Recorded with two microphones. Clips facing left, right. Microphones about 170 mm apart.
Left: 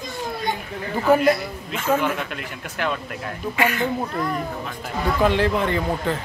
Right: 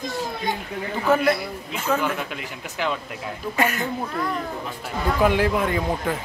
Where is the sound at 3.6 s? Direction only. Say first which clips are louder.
Left 1 dB; 40° right (ahead or behind).